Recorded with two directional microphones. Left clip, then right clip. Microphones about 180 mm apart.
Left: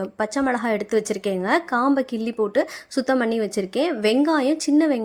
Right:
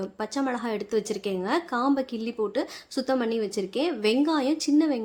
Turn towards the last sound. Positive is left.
turn(degrees=30)  # may be behind; listen again after turning